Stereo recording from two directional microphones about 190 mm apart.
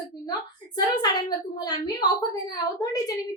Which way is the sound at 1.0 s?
20° left (ahead or behind).